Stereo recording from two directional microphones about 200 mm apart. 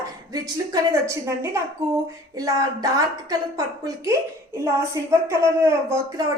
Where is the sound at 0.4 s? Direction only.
15° right (ahead or behind).